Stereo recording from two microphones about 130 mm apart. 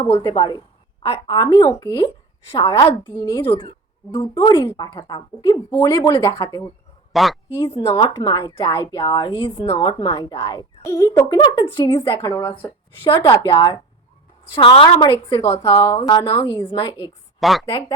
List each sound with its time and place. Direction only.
0.0 s a woman's voice: 30° left (ahead or behind)
7.1 s a woman's voice: centre (ahead or behind)
7.5 s a woman's voice: 40° left (ahead or behind); by 11.3 s 25° left (ahead or behind)
11.3 s a woman's voice: 35° left (ahead or behind); by 12.7 s 20° left (ahead or behind)
14.5 s a woman's voice: 40° left (ahead or behind)
17.4 s speech: centre (ahead or behind)
17.7 s a woman's voice: 30° left (ahead or behind)